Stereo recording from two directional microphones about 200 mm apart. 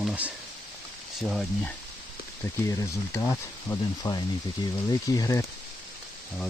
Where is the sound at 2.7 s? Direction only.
15° left (ahead or behind).